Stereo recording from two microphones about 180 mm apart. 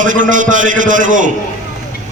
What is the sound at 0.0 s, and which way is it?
A man's voice, 45° right (ahead or behind).